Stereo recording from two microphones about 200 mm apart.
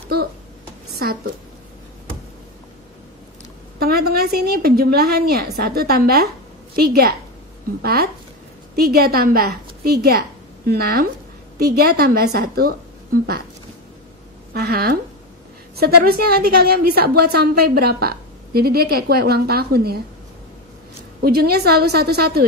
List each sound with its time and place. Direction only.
3.8 s a woman's voice: 50° right (ahead or behind)
14.5 s a woman's voice: 50° right (ahead or behind)
21.2 s a woman's voice: 50° right (ahead or behind)